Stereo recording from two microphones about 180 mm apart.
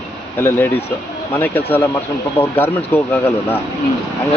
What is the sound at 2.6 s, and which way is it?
Speech, 10° left (ahead or behind).